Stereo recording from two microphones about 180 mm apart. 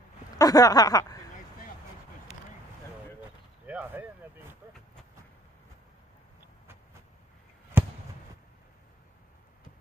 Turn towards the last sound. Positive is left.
turn(degrees=-10)  # may be behind; listen again after turning